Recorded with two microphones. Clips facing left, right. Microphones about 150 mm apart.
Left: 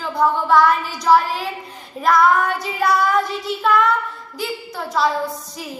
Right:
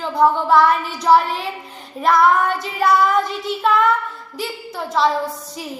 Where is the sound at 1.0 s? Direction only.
Centre (ahead or behind).